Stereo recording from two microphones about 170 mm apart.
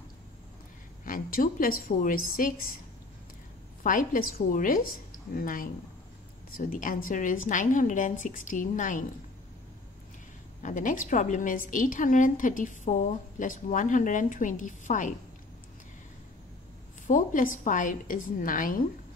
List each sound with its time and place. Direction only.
1.0 s a woman's voice: 55° left (ahead or behind)
3.8 s a woman's voice: 55° left (ahead or behind)
10.6 s a woman's voice: 50° left (ahead or behind)
17.1 s a woman's voice: 50° left (ahead or behind)